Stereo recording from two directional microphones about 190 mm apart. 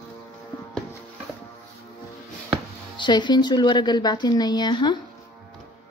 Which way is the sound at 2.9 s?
25° left (ahead or behind).